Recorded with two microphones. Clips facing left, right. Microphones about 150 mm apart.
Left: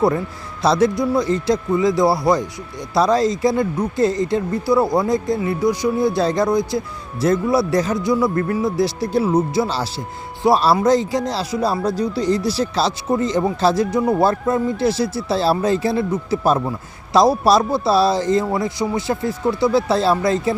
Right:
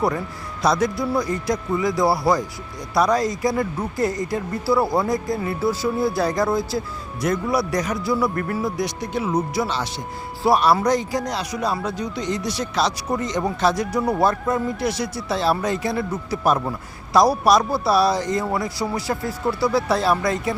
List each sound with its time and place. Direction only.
0.6 s speech: 25° left (ahead or behind)
14.0 s speech: centre (ahead or behind)
14.3 s speech: 25° left (ahead or behind)